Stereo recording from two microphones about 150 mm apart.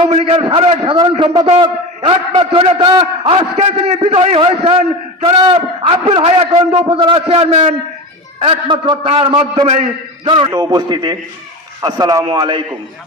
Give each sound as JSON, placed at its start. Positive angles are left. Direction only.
{"t": 0.1, "sound": "a man's voice", "side_deg": -45}
{"t": 2.9, "sound": "a man's voice", "side_deg": -30}
{"t": 3.3, "sound": "a man's voice", "side_deg": -45}